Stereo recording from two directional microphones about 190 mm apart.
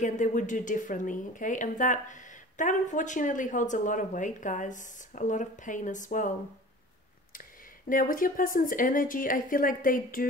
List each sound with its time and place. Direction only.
0.0 s speech: 40° left (ahead or behind)
7.9 s speech: 45° left (ahead or behind)